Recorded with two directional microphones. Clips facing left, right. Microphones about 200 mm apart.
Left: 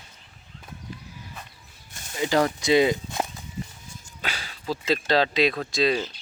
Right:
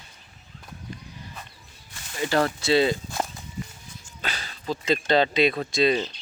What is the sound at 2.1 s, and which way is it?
Speech, 15° left (ahead or behind).